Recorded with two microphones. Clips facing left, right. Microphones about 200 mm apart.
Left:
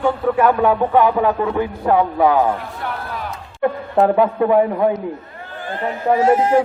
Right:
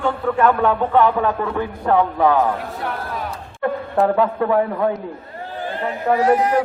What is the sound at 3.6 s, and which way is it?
A man's voice, 20° left (ahead or behind).